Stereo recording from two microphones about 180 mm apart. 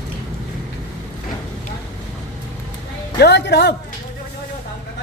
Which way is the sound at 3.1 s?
70° left (ahead or behind).